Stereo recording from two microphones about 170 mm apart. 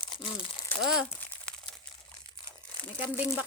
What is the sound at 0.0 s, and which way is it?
Crumpling, 30° left (ahead or behind).